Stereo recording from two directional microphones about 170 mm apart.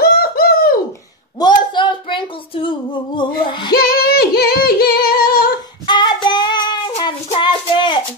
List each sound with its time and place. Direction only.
0.0 s bird: 65° left (ahead or behind)
1.4 s a sound: 30° left (ahead or behind)
3.4 s female singing: 30° left (ahead or behind)
3.7 s singing: 65° left (ahead or behind)
5.9 s child singing: 25° left (ahead or behind)
7.2 s a sound: 30° left (ahead or behind)